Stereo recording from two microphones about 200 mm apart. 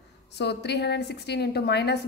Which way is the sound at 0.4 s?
55° left (ahead or behind).